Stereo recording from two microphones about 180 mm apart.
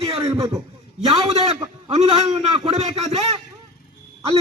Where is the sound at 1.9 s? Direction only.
40° right (ahead or behind).